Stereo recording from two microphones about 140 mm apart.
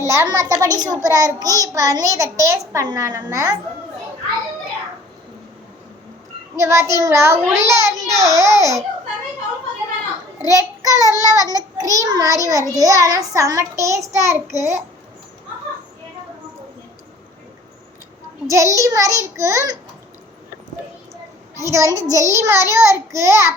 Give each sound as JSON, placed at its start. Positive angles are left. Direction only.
{"t": 0.0, "sound": "child singing", "side_deg": -20}
{"t": 6.6, "sound": "child singing", "side_deg": -20}
{"t": 10.5, "sound": "child singing", "side_deg": -25}
{"t": 18.4, "sound": "child singing", "side_deg": -20}
{"t": 21.6, "sound": "child singing", "side_deg": -20}